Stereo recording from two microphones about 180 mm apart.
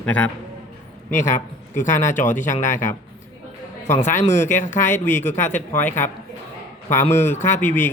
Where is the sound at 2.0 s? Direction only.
45° left (ahead or behind).